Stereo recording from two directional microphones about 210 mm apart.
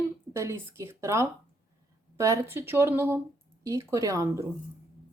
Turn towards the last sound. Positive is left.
turn(degrees=-15)  # may be behind; listen again after turning